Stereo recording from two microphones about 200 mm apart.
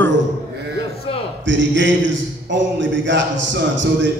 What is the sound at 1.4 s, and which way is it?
A man's voice, 65° right (ahead or behind).